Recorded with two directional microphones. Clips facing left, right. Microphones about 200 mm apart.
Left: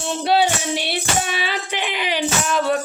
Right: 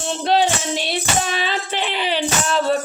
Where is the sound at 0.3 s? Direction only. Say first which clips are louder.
Even; 10° left (ahead or behind).